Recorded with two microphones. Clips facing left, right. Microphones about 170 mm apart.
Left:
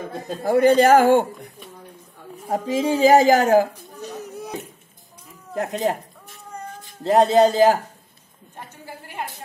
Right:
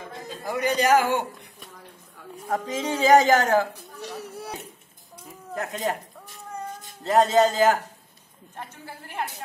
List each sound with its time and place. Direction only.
0.0 s a man's voice: 50° left (ahead or behind)
2.4 s speech: 25° left (ahead or behind)
3.0 s a man's voice: 40° left (ahead or behind)
5.6 s a man's voice: 40° left (ahead or behind)
7.0 s a man's voice: 35° left (ahead or behind)